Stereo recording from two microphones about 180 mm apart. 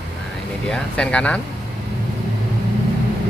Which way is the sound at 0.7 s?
5° left (ahead or behind).